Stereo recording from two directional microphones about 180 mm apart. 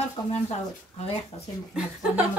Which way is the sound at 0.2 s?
20° left (ahead or behind).